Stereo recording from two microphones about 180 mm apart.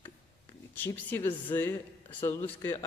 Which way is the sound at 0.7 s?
10° left (ahead or behind).